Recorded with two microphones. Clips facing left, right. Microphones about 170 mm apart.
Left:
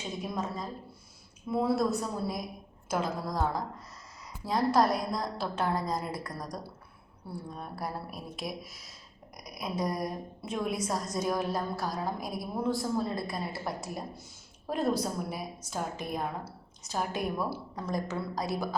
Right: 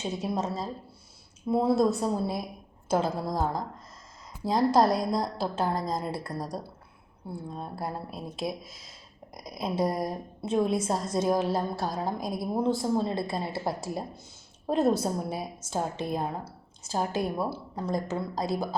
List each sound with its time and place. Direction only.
0.0 s a woman's voice: 25° right (ahead or behind)
1.5 s a woman's voice: 25° right (ahead or behind)
4.4 s a woman's voice: 25° right (ahead or behind)